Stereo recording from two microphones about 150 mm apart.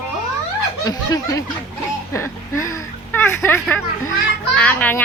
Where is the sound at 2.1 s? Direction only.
20° left (ahead or behind).